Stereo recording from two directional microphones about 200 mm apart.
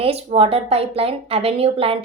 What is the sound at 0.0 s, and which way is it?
A woman's voice, 30° right (ahead or behind).